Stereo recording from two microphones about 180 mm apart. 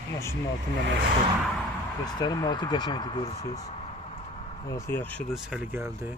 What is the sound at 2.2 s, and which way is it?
Speech, 25° left (ahead or behind).